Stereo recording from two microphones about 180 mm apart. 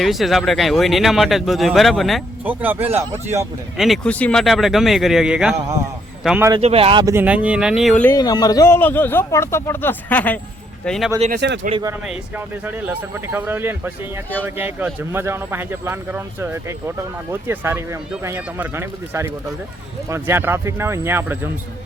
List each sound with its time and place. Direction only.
0.0 s speech: centre (ahead or behind)
2.4 s speech: 10° right (ahead or behind)
6.6 s speech: 35° right (ahead or behind)
7.0 s speech: 15° right (ahead or behind)
8.0 s speech: 20° left (ahead or behind); by 11.1 s centre (ahead or behind)
11.3 s speech: 70° right (ahead or behind)
11.7 s speech: 20° right (ahead or behind)
12.6 s speech: 10° right (ahead or behind)